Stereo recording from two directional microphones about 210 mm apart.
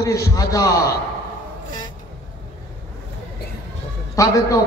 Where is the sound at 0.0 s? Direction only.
15° left (ahead or behind).